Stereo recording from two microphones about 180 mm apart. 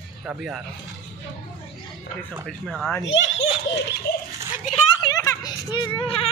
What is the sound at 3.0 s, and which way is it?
Speech, 90° left.